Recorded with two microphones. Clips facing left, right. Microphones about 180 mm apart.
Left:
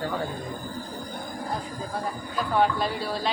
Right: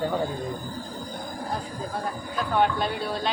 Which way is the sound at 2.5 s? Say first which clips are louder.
Even; centre (ahead or behind).